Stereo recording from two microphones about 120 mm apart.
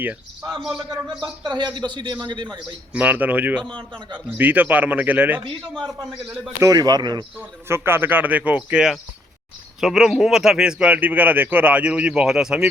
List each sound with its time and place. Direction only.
0.4 s a man's voice: centre (ahead or behind)
1.2 s speech: 40° right (ahead or behind)
2.9 s speech: 15° right (ahead or behind)
5.6 s a man's voice: 5° left (ahead or behind)
6.6 s speech: 30° right (ahead or behind)
7.7 s speech: 20° right (ahead or behind)